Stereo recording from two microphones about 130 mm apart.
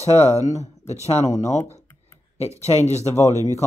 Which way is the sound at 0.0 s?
55° left (ahead or behind).